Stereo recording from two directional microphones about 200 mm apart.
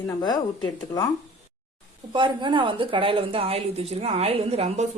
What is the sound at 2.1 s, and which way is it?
A woman's voice, 25° right (ahead or behind).